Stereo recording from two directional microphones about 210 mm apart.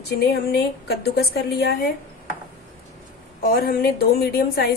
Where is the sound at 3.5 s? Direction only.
45° left (ahead or behind).